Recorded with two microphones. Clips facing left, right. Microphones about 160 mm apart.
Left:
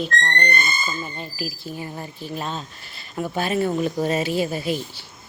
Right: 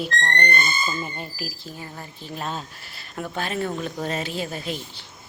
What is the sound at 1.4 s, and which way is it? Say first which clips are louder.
Speech: left 4 dB; 5° left (ahead or behind).